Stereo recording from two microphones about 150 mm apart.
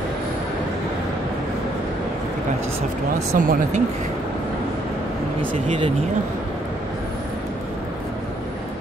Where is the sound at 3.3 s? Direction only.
65° right (ahead or behind).